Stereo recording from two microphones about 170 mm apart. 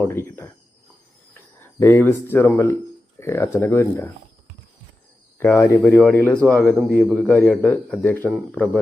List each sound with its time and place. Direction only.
0.1 s cricket: 15° left (ahead or behind)
1.6 s speech: 10° left (ahead or behind)
5.4 s speech: 15° left (ahead or behind)